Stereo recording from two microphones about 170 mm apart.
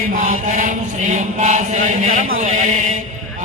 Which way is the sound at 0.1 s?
50° right (ahead or behind).